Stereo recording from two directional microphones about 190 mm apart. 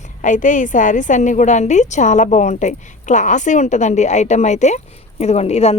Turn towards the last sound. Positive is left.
turn(degrees=35)  # may be behind; listen again after turning